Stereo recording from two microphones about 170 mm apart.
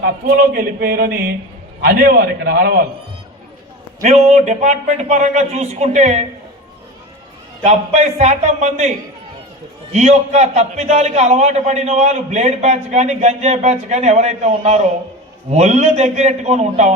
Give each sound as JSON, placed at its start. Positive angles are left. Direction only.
{"t": 0.0, "sound": "a sound", "side_deg": -65}
{"t": 4.0, "sound": "a man's voice", "side_deg": -45}
{"t": 7.6, "sound": "a man's voice", "side_deg": -40}
{"t": 9.9, "sound": "a man's voice", "side_deg": -40}